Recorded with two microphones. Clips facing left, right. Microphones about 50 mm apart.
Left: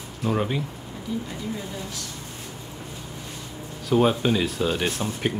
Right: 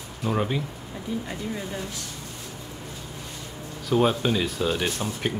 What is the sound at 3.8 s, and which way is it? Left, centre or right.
Speech, centre.